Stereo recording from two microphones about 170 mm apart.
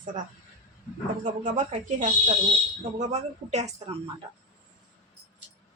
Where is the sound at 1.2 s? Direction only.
50° right (ahead or behind).